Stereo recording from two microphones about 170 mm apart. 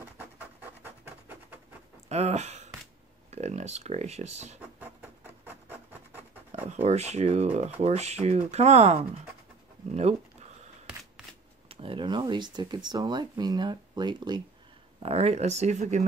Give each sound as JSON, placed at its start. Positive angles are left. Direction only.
{"t": 0.8, "sound": "scratch", "side_deg": -10}
{"t": 2.0, "sound": "speech", "side_deg": -40}
{"t": 4.6, "sound": "rub", "side_deg": -10}
{"t": 6.6, "sound": "speech", "side_deg": -40}
{"t": 11.7, "sound": "speech", "side_deg": -30}
{"t": 15.0, "sound": "speech", "side_deg": -35}